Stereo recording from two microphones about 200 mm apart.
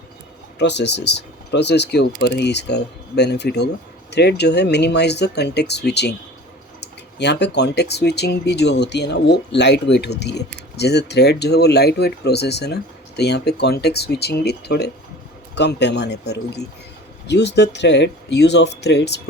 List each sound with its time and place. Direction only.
0.6 s speech: 60° left (ahead or behind)